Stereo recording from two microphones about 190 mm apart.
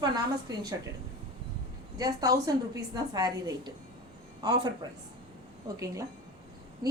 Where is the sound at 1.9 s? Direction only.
20° right (ahead or behind).